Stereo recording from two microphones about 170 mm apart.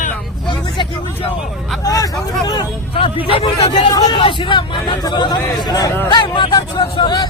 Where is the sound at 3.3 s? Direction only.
30° left (ahead or behind).